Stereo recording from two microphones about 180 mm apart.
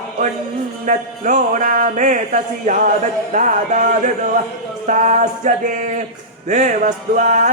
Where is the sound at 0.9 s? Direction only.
45° right (ahead or behind).